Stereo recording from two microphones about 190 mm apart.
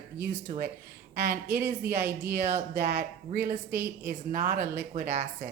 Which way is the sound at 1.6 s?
45° right (ahead or behind).